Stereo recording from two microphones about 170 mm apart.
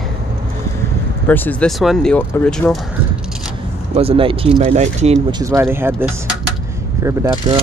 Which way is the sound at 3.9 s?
35° right (ahead or behind).